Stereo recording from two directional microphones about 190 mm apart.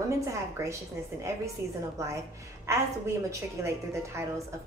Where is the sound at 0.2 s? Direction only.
15° right (ahead or behind).